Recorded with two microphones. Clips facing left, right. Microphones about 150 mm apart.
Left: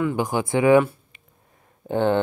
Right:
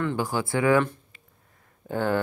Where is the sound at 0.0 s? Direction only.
15° left (ahead or behind).